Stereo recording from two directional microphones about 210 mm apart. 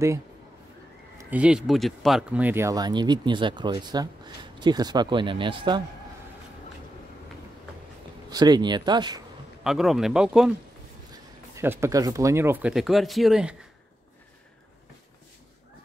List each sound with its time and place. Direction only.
1.1 s speech: 5° right (ahead or behind); by 5.8 s 25° right (ahead or behind)
8.3 s speech: 20° right (ahead or behind)
9.6 s speech: centre (ahead or behind)
11.5 s speech: 10° right (ahead or behind)